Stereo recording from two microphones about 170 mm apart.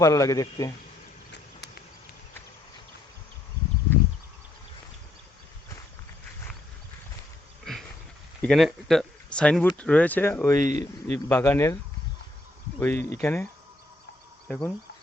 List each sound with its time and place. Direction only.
0.0 s speech: 20° left (ahead or behind)
7.6 s a sound: centre (ahead or behind)
8.4 s speech: centre (ahead or behind)
10.6 s speech: 45° right (ahead or behind)
11.3 s speech: 10° left (ahead or behind)
12.8 s speech: 15° left (ahead or behind)